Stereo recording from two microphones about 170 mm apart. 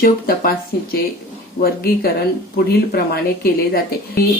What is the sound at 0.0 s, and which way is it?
Speech, 60° left (ahead or behind).